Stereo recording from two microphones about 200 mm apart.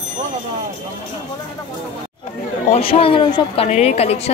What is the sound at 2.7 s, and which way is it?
Speech, 30° left (ahead or behind).